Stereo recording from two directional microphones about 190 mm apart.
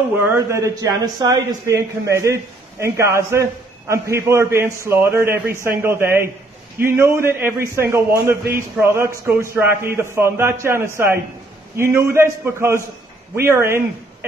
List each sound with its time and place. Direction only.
0.3 s a man's voice: 15° right (ahead or behind)